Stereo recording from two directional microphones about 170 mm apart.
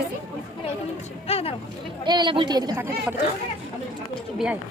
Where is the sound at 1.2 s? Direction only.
35° left (ahead or behind).